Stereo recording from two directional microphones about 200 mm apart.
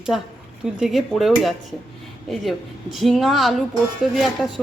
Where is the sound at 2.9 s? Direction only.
Centre (ahead or behind).